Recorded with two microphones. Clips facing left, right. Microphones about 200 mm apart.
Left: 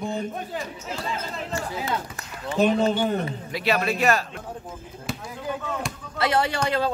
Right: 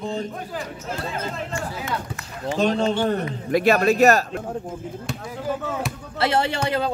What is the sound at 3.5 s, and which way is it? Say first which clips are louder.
Speech: right 7 dB; 45° right (ahead or behind).